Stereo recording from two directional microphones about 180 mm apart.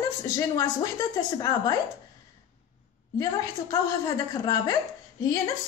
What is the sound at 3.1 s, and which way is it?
A woman's voice, 20° left (ahead or behind).